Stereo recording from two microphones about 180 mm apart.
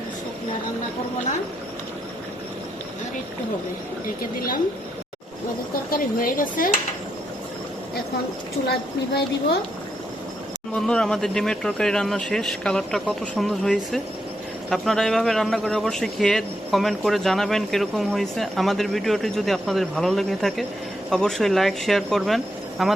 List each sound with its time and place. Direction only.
4.4 s speech: 55° left (ahead or behind)
5.9 s speech: 50° left (ahead or behind)
10.8 s speech: 5° left (ahead or behind)